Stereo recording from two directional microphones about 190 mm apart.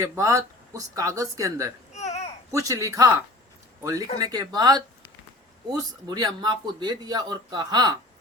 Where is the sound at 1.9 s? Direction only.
35° left (ahead or behind).